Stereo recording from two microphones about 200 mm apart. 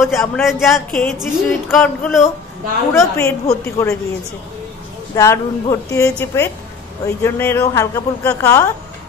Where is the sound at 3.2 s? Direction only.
15° left (ahead or behind).